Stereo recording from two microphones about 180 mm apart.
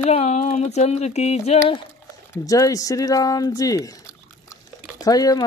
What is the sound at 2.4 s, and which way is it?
Speech, 20° left (ahead or behind).